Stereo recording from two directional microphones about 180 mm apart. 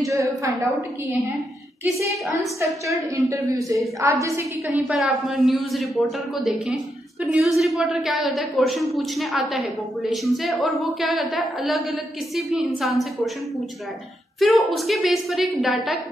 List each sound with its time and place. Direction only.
0.0 s a woman's voice: 15° right (ahead or behind)
2.6 s a woman's voice: 15° right (ahead or behind)
4.7 s a woman's voice: 5° right (ahead or behind)
14.4 s a woman's voice: centre (ahead or behind)